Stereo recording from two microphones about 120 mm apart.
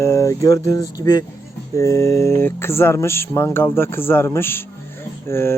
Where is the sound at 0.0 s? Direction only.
25° left (ahead or behind).